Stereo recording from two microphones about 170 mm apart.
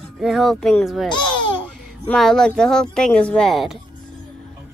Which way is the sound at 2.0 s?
5° left (ahead or behind).